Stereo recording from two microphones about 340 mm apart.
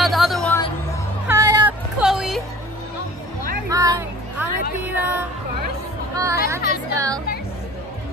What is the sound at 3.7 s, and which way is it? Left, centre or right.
Music, centre.